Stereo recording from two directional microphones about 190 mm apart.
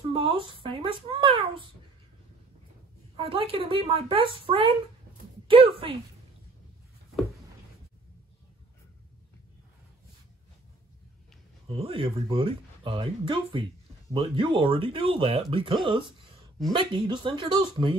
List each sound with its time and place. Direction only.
0.1 s speech: 25° right (ahead or behind)
3.2 s speech: 25° right (ahead or behind)
11.7 s speech: 30° right (ahead or behind)